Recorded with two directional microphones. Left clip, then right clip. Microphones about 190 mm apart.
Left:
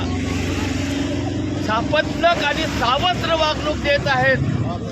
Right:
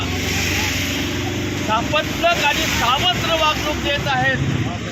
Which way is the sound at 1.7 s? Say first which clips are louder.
Even; 15° left (ahead or behind).